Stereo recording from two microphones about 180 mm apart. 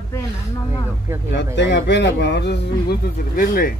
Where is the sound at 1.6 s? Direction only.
75° left (ahead or behind); by 3.7 s 50° left (ahead or behind).